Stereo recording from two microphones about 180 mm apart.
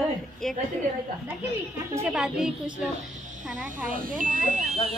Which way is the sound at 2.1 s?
5° right (ahead or behind).